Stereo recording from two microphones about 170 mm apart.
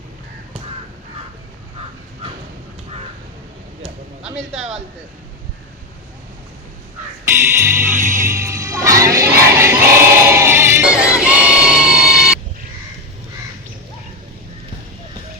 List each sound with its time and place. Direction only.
7.3 s music: 15° right (ahead or behind)
7.9 s music: 50° right (ahead or behind)
8.3 s music: 15° right (ahead or behind)
9.1 s crowd: 15° right (ahead or behind)
10.2 s music: 15° right (ahead or behind)